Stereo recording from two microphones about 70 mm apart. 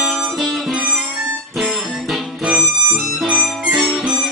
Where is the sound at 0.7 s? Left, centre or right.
Centre.